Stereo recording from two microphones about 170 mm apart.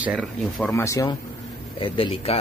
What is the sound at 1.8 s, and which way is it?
Speech, 30° left (ahead or behind).